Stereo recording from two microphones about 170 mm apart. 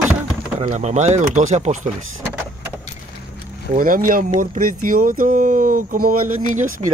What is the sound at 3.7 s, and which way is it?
Speech, 55° right (ahead or behind).